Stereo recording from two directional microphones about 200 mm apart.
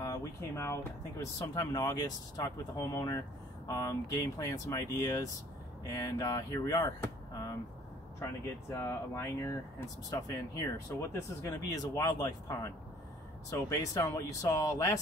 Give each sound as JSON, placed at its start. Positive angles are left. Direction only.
{"t": 0.0, "sound": "speech", "side_deg": 15}
{"t": 8.2, "sound": "speech", "side_deg": 15}